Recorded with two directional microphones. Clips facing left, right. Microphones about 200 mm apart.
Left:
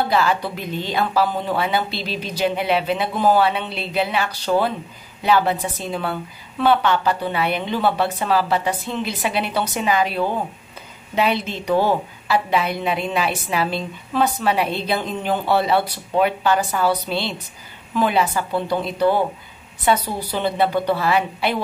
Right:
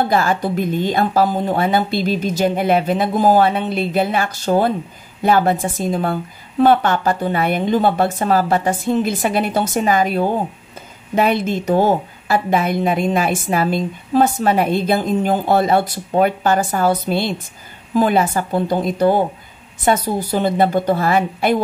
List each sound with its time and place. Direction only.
0.1 s a woman's voice: 45° right (ahead or behind)